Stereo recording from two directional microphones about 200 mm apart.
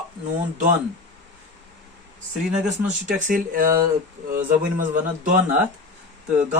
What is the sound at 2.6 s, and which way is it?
Speech, 40° right (ahead or behind).